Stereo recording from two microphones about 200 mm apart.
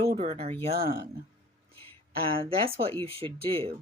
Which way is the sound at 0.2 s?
30° right (ahead or behind).